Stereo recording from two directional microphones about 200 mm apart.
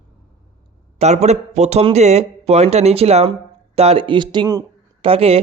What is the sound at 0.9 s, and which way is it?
A man's voice, 35° right (ahead or behind).